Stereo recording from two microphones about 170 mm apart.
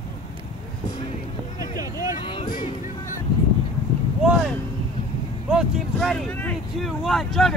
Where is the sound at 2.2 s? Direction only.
30° left (ahead or behind).